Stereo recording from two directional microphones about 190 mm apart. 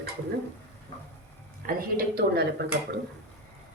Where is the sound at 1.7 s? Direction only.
55° right (ahead or behind).